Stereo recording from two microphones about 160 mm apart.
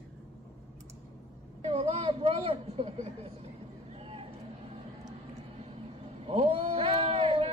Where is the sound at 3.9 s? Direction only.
35° right (ahead or behind).